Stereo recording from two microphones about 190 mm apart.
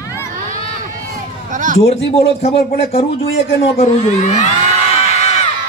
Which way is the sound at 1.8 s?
30° left (ahead or behind).